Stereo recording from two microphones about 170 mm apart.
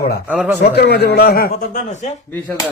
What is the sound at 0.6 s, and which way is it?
A man's voice, 70° left (ahead or behind).